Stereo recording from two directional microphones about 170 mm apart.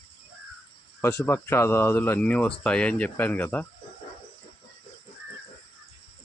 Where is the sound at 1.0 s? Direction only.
15° left (ahead or behind).